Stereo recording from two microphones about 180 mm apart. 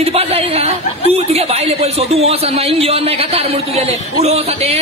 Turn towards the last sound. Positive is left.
turn(degrees=-35)  # may be behind; listen again after turning